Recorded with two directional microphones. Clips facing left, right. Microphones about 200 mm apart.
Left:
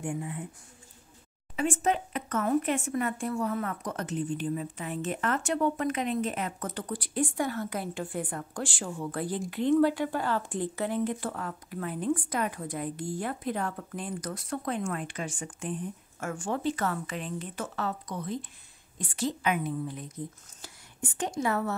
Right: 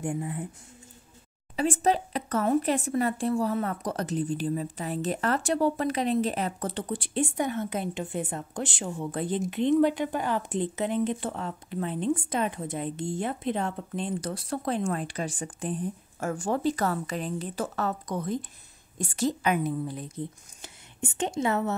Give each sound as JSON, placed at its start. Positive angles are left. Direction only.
{"t": 0.0, "sound": "a woman's voice", "side_deg": -35}
{"t": 1.6, "sound": "a woman's voice", "side_deg": -35}
{"t": 20.6, "sound": "speech", "side_deg": -25}